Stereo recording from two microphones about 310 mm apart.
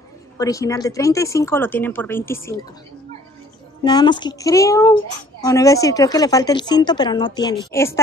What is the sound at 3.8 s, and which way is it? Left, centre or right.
Speech, centre.